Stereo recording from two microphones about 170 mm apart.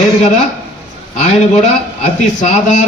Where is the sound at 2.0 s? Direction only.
45° left (ahead or behind).